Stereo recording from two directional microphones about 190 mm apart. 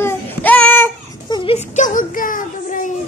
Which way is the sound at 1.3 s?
30° left (ahead or behind).